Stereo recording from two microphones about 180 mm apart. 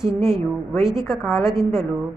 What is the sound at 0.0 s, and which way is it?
A woman's voice, centre (ahead or behind).